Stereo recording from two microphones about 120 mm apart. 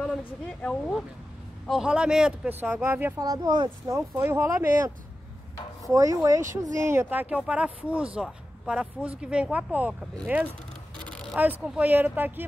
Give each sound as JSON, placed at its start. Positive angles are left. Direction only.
{"t": 0.0, "sound": "speech", "side_deg": 10}
{"t": 1.7, "sound": "speech", "side_deg": -5}
{"t": 3.2, "sound": "speech", "side_deg": -35}
{"t": 4.1, "sound": "speech", "side_deg": -20}
{"t": 5.9, "sound": "speech", "side_deg": -30}
{"t": 11.0, "sound": "a sound", "side_deg": 10}
{"t": 11.3, "sound": "speech", "side_deg": -10}